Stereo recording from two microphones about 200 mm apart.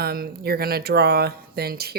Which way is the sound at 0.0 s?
50° right (ahead or behind).